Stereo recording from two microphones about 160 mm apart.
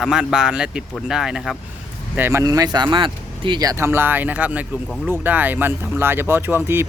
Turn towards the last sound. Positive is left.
turn(degrees=-15)  # may be behind; listen again after turning